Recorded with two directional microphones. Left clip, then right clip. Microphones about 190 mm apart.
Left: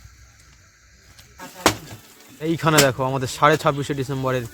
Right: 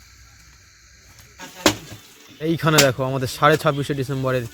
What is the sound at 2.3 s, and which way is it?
Speech, centre (ahead or behind).